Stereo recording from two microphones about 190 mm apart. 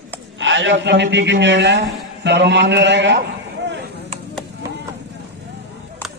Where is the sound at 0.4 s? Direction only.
75° right (ahead or behind).